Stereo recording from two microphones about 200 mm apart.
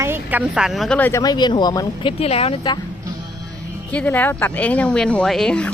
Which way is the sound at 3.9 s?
5° left (ahead or behind).